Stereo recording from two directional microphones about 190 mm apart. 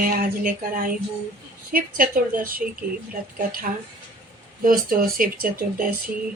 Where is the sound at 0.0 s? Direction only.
50° right (ahead or behind).